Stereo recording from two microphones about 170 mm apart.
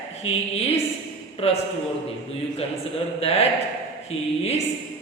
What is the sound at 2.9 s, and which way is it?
A woman's voice, 35° left (ahead or behind).